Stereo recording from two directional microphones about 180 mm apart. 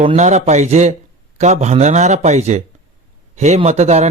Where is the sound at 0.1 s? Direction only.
40° right (ahead or behind).